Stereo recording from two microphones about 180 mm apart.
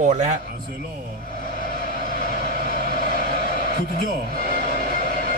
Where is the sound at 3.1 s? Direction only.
50° left (ahead or behind).